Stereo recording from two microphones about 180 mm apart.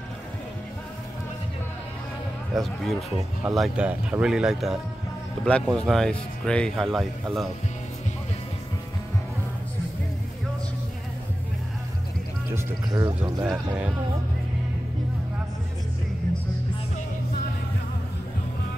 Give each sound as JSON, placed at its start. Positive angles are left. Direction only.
{"t": 2.5, "sound": "speech", "side_deg": 0}
{"t": 12.5, "sound": "speech", "side_deg": -20}
{"t": 13.2, "sound": "speech", "side_deg": -10}